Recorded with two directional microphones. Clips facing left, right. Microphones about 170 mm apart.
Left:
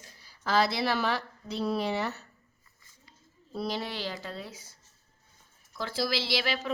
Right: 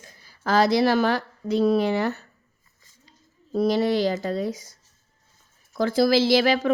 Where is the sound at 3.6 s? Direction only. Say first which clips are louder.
Right 13 dB; 45° right (ahead or behind).